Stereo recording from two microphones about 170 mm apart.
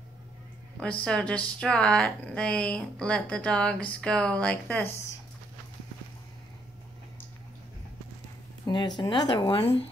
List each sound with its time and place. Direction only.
1.0 s a woman's voice: 5° left (ahead or behind)
8.6 s speech: 25° left (ahead or behind)